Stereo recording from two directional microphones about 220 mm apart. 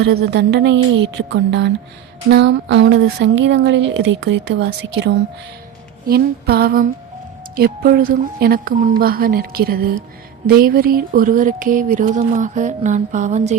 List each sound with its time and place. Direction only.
0.0 s speech: 50° right (ahead or behind); by 13.6 s 30° right (ahead or behind)